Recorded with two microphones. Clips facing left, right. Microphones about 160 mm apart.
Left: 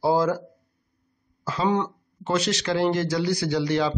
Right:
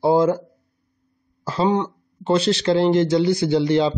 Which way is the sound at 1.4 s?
35° right (ahead or behind).